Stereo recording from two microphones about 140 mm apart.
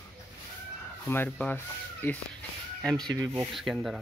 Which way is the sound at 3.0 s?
25° right (ahead or behind).